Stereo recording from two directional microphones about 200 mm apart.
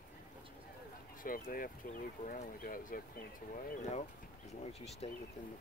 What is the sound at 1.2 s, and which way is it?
Speech, 45° left (ahead or behind).